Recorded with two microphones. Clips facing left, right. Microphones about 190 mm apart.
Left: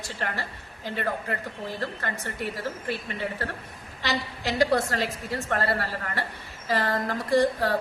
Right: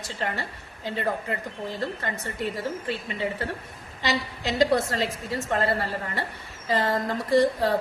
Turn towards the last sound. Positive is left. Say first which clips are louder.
# right 1 dB
turn(degrees=-20)  # may be behind; listen again after turning